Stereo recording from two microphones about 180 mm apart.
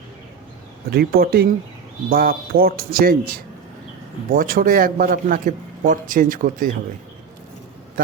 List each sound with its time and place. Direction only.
0.9 s speech: 60° right (ahead or behind)